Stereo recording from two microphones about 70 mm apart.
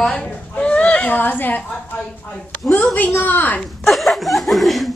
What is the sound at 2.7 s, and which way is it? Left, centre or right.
Speech, left.